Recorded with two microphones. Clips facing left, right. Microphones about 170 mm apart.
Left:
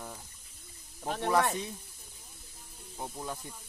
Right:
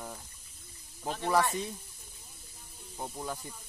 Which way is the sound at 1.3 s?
20° left (ahead or behind).